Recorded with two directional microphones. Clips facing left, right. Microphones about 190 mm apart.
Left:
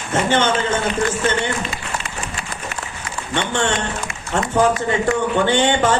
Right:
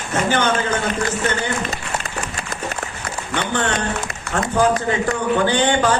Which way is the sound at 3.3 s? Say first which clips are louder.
Left 1 dB; 25° left (ahead or behind).